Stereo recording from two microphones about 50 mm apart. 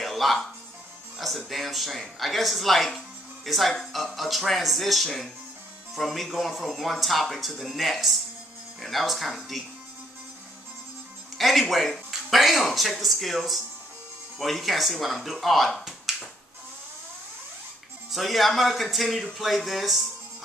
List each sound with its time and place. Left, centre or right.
0.0 s music: centre
1.1 s speech: centre
11.3 s speech: centre
18.1 s speech: centre